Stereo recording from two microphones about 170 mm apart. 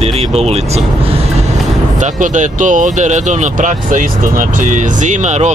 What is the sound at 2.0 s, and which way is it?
Speech, 45° right (ahead or behind).